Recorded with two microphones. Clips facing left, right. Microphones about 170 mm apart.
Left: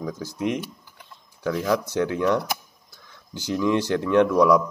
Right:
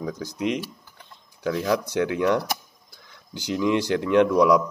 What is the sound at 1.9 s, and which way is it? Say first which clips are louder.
Speech: even; 15° right (ahead or behind).